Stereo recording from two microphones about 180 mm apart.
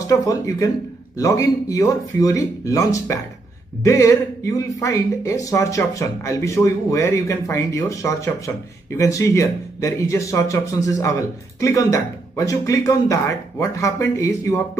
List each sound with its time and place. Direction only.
0.0 s speech: 20° left (ahead or behind)